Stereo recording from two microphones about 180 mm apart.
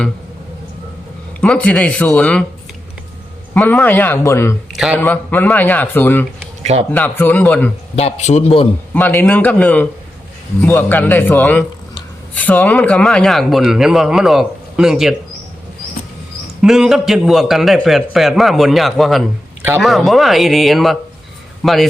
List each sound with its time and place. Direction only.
1.4 s a man's voice: 5° left (ahead or behind)
3.5 s a man's voice: 10° left (ahead or behind)
4.7 s speech: 5° right (ahead or behind)
4.9 s a man's voice: 10° left (ahead or behind)
6.6 s speech: 35° right (ahead or behind)
6.9 s a man's voice: 10° left (ahead or behind)
7.9 s a man's voice: 35° left (ahead or behind)
8.9 s a man's voice: 10° left (ahead or behind)
16.6 s a man's voice: 5° right (ahead or behind)